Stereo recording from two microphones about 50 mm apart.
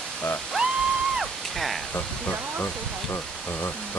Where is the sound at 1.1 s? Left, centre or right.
Centre.